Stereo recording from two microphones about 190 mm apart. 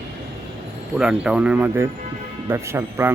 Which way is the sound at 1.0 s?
5° right (ahead or behind).